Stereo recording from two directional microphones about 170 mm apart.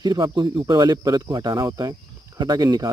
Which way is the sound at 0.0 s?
25° right (ahead or behind).